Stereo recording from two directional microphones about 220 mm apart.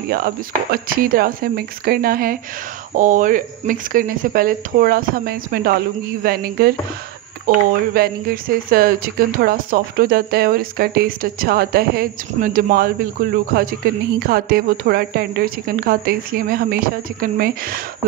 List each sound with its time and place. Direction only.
0.8 s a woman's voice: 40° right (ahead or behind)